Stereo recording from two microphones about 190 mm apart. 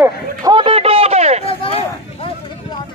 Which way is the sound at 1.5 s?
30° left (ahead or behind).